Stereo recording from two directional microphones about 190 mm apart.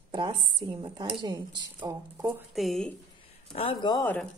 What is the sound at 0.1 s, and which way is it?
A woman's voice, 25° right (ahead or behind).